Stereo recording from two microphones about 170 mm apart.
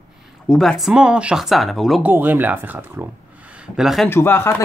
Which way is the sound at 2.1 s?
10° right (ahead or behind).